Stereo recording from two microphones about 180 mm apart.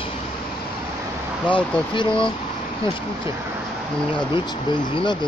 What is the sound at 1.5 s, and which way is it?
Speech, 30° left (ahead or behind).